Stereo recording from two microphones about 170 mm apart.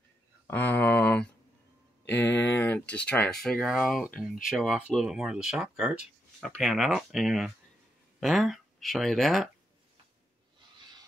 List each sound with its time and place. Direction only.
0.5 s speech: 10° left (ahead or behind)
2.0 s speech: 90° left
2.6 s speech: 10° left (ahead or behind)